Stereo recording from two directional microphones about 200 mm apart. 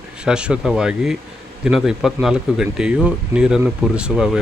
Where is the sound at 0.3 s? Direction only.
5° right (ahead or behind).